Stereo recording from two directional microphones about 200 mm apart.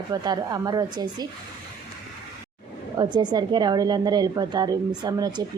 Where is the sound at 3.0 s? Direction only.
20° right (ahead or behind).